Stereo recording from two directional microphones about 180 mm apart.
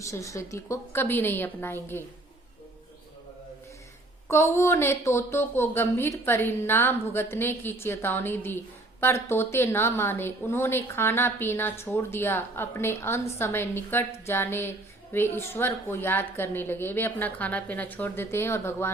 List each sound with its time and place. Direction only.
0.0 s speech: 15° left (ahead or behind)
4.3 s speech: 15° left (ahead or behind)